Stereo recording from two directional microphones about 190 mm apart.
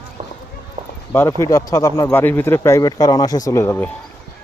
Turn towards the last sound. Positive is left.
turn(degrees=15)  # may be behind; listen again after turning